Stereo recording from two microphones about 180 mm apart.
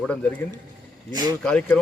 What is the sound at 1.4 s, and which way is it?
Speech, 5° left (ahead or behind).